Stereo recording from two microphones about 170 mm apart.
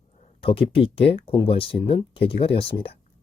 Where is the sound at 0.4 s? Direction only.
30° left (ahead or behind).